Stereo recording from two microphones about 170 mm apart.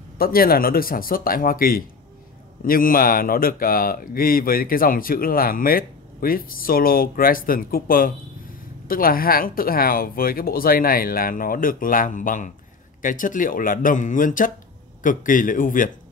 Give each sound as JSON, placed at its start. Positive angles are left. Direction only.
{"t": 0.2, "sound": "speech", "side_deg": 60}